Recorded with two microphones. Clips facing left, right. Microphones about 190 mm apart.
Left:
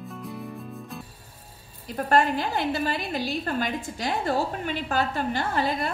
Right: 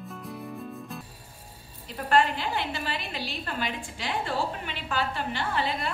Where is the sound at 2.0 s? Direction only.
45° left (ahead or behind).